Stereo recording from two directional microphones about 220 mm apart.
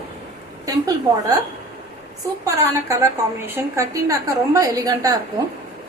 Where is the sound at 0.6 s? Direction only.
15° right (ahead or behind).